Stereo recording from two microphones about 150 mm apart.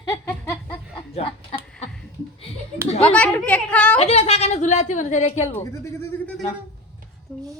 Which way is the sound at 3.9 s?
45° left (ahead or behind).